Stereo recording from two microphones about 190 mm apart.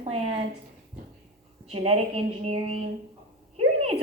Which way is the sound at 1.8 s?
30° right (ahead or behind).